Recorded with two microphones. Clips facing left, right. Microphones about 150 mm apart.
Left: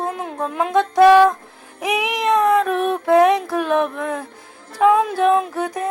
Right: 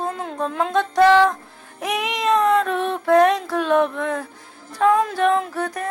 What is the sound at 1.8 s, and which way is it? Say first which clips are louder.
Meow: left 3 dB; 10° left (ahead or behind).